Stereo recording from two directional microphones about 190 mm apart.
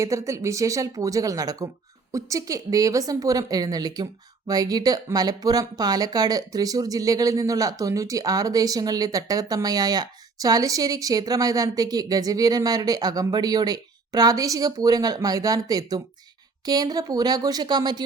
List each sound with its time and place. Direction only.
0.0 s a woman's voice: 15° right (ahead or behind)